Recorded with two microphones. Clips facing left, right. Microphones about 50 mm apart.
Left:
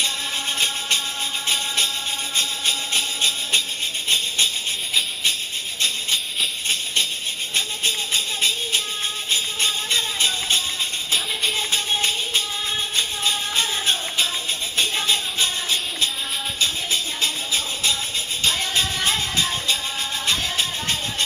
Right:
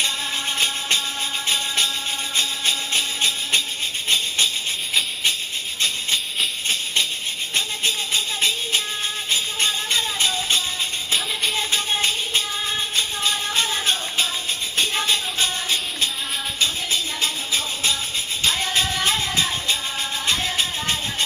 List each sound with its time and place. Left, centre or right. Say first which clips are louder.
2.6 s music: right 1 dB; right
8.1 s music: right 1 dB; right
11.9 s music: even; right
17.2 s music: even; right